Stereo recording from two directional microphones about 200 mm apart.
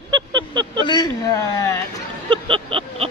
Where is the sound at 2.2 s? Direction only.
25° right (ahead or behind).